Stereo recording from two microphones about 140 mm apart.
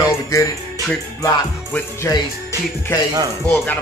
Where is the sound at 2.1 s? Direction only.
20° left (ahead or behind).